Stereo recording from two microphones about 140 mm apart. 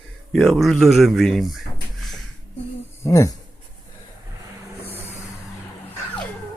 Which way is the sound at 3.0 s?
25° left (ahead or behind).